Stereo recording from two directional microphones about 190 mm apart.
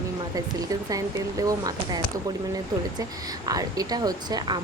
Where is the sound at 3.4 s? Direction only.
20° right (ahead or behind).